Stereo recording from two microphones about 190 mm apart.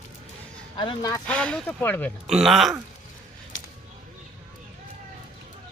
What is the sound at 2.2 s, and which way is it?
Speech, 5° right (ahead or behind).